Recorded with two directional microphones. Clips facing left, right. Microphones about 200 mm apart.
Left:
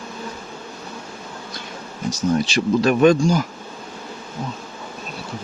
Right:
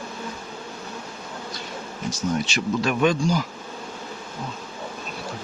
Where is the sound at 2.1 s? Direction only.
35° left (ahead or behind).